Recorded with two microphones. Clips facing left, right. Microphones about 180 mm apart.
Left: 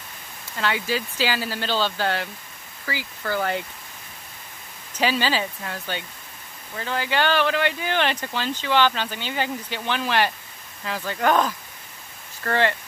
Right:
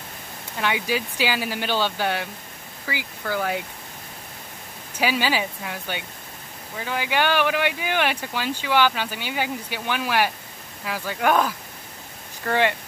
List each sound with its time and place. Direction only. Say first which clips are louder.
0.6 s speech: right 1 dB; 15° right (ahead or behind)
4.9 s speech: even; 10° right (ahead or behind)